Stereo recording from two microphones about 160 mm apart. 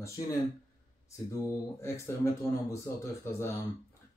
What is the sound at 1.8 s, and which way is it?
Speech, 15° left (ahead or behind).